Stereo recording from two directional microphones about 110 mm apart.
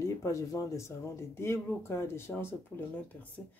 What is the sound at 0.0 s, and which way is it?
Speech, 30° left (ahead or behind).